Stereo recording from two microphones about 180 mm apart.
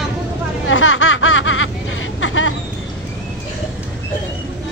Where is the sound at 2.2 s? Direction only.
90° left.